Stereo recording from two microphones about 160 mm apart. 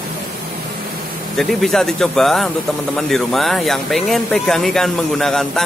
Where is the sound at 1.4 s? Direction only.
Centre (ahead or behind).